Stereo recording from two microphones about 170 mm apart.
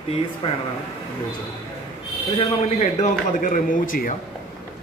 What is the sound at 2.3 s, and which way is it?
A man's voice, 40° left (ahead or behind).